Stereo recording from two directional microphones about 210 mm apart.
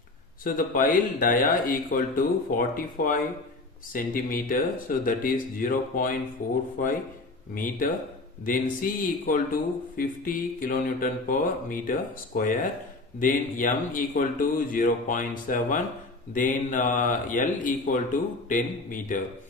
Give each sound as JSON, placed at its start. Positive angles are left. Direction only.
{"t": 0.4, "sound": "speech", "side_deg": 40}